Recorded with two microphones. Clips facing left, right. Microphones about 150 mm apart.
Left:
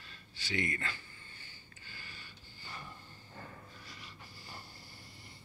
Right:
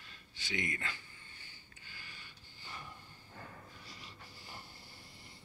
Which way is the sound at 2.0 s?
15° right (ahead or behind).